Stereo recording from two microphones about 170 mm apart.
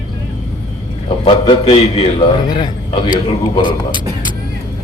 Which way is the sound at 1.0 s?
35° left (ahead or behind).